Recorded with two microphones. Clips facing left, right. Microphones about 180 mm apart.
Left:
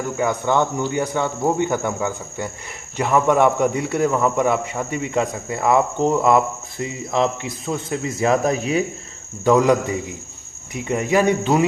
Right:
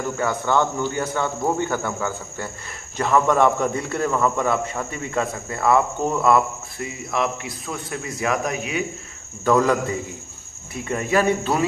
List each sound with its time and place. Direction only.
0.2 s a man's voice: 15° left (ahead or behind); by 8.8 s 35° left (ahead or behind)
9.4 s a man's voice: 15° left (ahead or behind)